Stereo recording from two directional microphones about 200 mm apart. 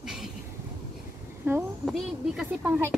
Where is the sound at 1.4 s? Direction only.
10° right (ahead or behind).